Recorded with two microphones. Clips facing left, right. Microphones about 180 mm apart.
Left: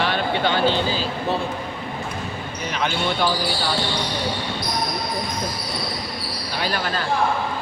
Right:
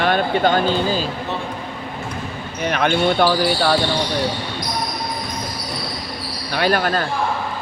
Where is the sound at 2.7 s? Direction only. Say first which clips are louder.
Right 7 dB; 55° right (ahead or behind).